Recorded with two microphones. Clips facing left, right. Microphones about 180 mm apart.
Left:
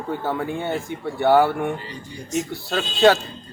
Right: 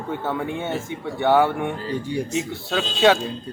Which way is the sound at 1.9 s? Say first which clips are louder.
Right 11 dB; 70° right (ahead or behind).